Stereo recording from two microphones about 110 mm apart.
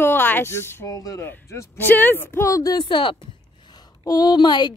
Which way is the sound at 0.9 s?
35° left (ahead or behind).